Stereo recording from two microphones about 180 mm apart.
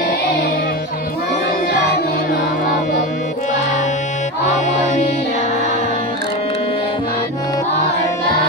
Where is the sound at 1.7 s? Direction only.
65° left (ahead or behind).